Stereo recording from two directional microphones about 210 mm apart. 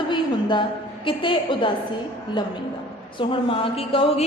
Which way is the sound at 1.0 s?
25° left (ahead or behind).